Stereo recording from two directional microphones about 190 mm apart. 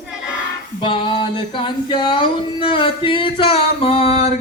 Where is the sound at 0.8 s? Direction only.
25° left (ahead or behind).